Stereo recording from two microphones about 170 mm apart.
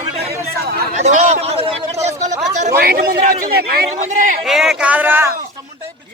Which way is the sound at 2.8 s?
65° right (ahead or behind).